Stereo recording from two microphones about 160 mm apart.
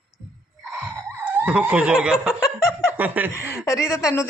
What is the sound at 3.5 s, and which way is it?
Speech, 20° left (ahead or behind).